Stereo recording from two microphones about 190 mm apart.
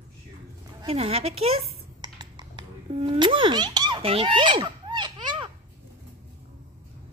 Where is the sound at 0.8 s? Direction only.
30° right (ahead or behind).